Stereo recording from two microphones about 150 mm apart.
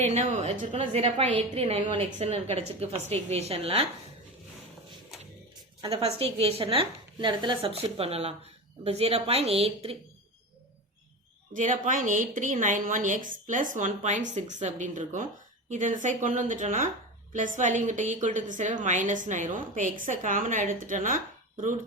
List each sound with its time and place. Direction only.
0.1 s a woman's voice: 50° right (ahead or behind)
5.9 s a woman's voice: 40° right (ahead or behind)
11.5 s a woman's voice: 60° right (ahead or behind)